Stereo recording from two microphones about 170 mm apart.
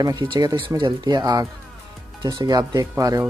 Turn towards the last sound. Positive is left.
turn(degrees=-20)  # may be behind; listen again after turning